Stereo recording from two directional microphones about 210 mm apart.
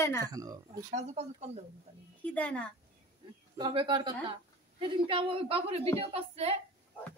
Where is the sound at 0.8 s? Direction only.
35° right (ahead or behind).